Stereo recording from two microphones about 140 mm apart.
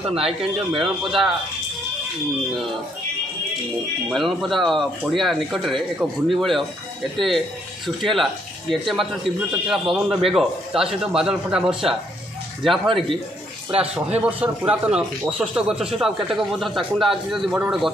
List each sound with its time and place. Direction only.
0.3 s speech: centre (ahead or behind)
4.1 s speech: centre (ahead or behind)
12.8 s speech: 40° right (ahead or behind)
14.2 s speech: 10° right (ahead or behind)